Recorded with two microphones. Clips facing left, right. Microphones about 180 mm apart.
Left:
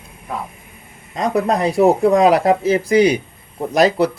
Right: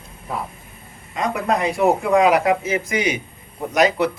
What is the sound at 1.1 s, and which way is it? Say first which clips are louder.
Speech: left 4 dB; 35° left (ahead or behind).